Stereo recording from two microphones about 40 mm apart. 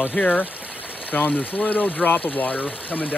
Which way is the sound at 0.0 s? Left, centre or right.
Left.